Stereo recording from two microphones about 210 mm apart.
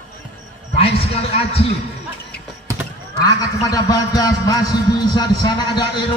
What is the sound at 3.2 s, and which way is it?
A man's voice, 20° left (ahead or behind).